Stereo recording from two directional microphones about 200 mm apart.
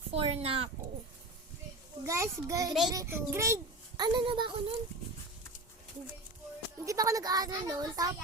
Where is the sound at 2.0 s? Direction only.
15° right (ahead or behind).